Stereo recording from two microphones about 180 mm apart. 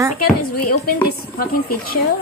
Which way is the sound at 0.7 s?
55° left (ahead or behind).